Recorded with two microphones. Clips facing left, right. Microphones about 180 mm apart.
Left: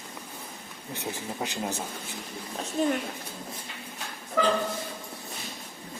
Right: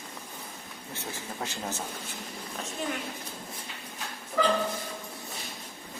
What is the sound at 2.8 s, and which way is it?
Speech, 40° left (ahead or behind).